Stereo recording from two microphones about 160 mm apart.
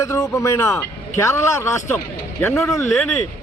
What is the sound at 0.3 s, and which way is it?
A man's voice, 15° left (ahead or behind).